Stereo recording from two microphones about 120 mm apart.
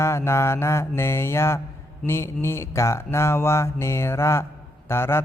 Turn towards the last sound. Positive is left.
turn(degrees=20)  # may be behind; listen again after turning